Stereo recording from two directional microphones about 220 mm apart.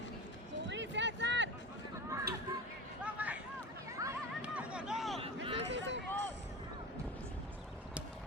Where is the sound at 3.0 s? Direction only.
5° right (ahead or behind).